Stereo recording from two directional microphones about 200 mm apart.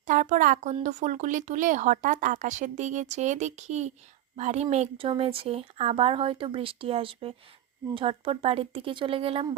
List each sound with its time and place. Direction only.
0.1 s a woman's voice: 40° right (ahead or behind)